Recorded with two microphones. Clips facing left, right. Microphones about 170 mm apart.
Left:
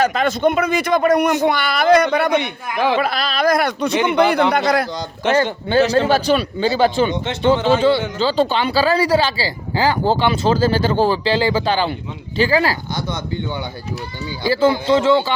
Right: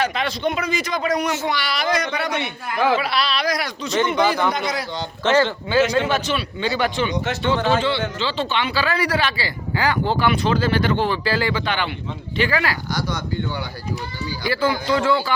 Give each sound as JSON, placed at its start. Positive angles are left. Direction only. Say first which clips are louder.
{"t": 0.0, "sound": "a man's voice", "louder": "left 6 dB", "side_deg": 45}
{"t": 5.7, "sound": "speech", "louder": "left 4 dB", "side_deg": 30}
{"t": 8.2, "sound": "speech", "louder": "left 6 dB", "side_deg": 35}